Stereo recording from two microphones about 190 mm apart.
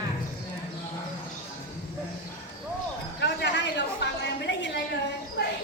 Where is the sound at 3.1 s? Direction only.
65° left (ahead or behind).